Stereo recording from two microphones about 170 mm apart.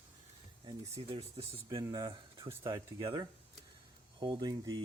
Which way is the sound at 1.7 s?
20° right (ahead or behind).